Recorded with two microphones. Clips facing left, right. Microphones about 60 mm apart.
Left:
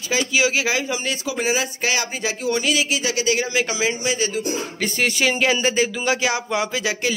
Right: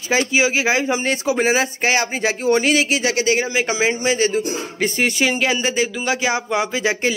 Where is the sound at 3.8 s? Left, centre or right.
Right.